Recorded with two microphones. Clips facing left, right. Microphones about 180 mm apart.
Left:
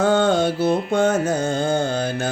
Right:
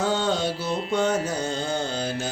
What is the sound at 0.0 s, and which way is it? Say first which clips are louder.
Music: left 7 dB; 55° left (ahead or behind).